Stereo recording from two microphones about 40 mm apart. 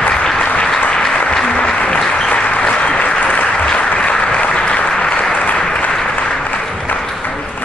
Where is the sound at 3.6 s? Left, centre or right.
Left.